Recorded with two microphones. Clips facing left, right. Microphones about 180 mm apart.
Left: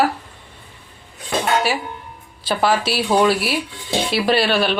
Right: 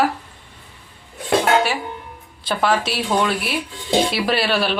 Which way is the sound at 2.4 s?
Centre (ahead or behind).